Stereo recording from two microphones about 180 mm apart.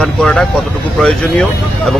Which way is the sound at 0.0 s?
5° left (ahead or behind).